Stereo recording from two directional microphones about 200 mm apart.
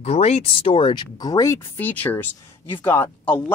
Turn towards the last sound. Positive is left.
turn(degrees=5)  # may be behind; listen again after turning